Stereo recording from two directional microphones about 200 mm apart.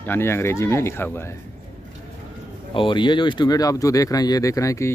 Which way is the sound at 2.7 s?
25° left (ahead or behind).